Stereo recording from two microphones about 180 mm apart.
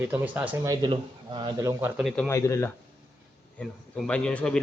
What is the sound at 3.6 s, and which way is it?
A man's voice, 5° left (ahead or behind).